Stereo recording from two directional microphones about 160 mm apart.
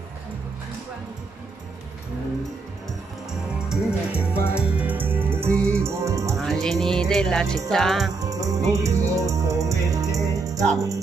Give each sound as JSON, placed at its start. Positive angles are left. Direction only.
{"t": 3.3, "sound": "music", "side_deg": -5}
{"t": 6.3, "sound": "music", "side_deg": 5}
{"t": 8.2, "sound": "music", "side_deg": -20}